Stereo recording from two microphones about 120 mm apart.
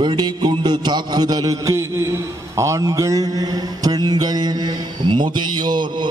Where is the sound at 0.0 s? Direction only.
35° right (ahead or behind).